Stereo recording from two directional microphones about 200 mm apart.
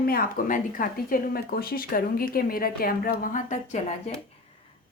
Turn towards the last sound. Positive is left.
turn(degrees=35)  # may be behind; listen again after turning